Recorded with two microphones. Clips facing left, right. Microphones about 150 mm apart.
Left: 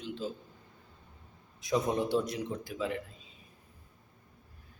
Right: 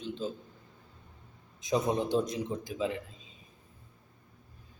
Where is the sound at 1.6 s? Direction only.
20° right (ahead or behind).